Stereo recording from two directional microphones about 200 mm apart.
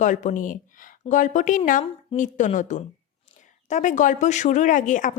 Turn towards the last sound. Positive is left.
turn(degrees=40)  # may be behind; listen again after turning